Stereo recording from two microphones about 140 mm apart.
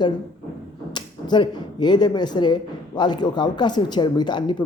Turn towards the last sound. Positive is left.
turn(degrees=30)  # may be behind; listen again after turning